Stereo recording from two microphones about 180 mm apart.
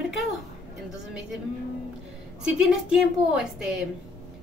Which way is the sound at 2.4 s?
5° right (ahead or behind).